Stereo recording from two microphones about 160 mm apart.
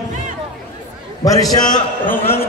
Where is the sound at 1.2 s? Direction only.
25° left (ahead or behind).